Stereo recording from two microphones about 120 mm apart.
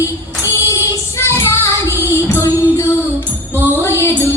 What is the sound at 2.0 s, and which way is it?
Music, 20° left (ahead or behind).